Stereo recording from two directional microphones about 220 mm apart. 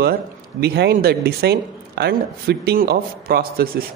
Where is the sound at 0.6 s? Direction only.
45° right (ahead or behind).